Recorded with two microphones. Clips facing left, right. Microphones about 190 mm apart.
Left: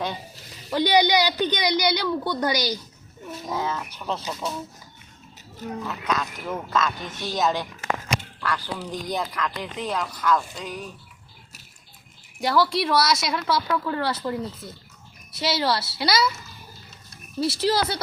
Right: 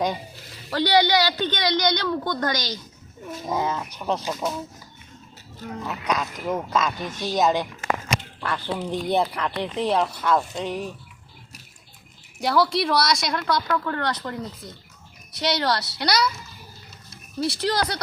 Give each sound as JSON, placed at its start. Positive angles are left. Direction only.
{"t": 0.7, "sound": "a woman's voice", "side_deg": 15}
{"t": 3.4, "sound": "speech", "side_deg": -20}
{"t": 5.8, "sound": "speech", "side_deg": -15}
{"t": 12.4, "sound": "a woman's voice", "side_deg": 0}
{"t": 17.4, "sound": "a woman's voice", "side_deg": 5}